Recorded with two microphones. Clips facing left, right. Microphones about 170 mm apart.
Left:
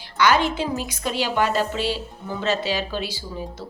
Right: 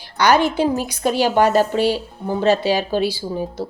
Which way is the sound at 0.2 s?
40° right (ahead or behind).